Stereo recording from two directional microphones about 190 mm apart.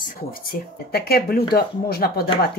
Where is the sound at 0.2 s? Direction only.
50° left (ahead or behind).